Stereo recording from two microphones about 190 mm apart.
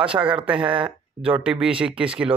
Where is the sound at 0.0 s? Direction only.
5° right (ahead or behind).